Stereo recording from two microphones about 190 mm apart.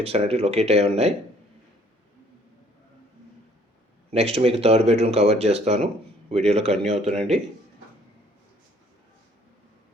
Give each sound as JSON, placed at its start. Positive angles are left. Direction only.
{"t": 0.0, "sound": "speech", "side_deg": -30}
{"t": 4.1, "sound": "speech", "side_deg": -30}